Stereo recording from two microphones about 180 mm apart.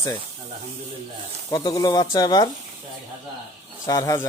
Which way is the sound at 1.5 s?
20° left (ahead or behind).